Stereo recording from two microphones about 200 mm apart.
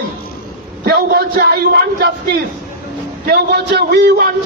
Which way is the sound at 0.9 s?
50° right (ahead or behind).